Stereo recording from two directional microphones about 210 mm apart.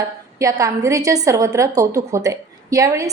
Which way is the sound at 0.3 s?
15° right (ahead or behind).